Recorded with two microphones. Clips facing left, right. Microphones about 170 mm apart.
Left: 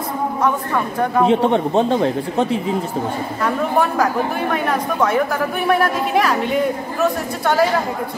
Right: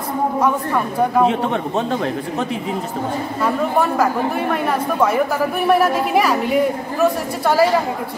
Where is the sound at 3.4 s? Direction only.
Centre (ahead or behind).